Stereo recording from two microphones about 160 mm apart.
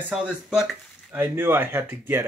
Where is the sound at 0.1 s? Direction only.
5° right (ahead or behind).